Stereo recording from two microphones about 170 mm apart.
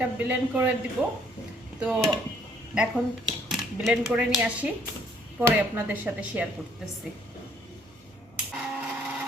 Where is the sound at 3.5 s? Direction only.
5° right (ahead or behind).